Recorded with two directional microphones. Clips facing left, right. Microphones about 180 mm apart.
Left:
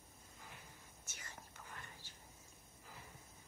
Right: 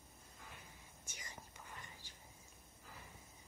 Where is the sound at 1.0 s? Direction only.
15° right (ahead or behind).